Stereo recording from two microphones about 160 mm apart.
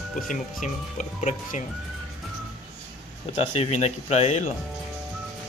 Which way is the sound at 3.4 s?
40° left (ahead or behind).